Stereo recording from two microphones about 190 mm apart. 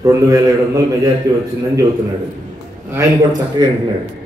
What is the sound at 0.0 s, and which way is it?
A man's voice, 15° right (ahead or behind).